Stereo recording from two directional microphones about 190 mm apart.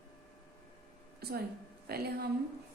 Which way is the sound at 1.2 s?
55° right (ahead or behind).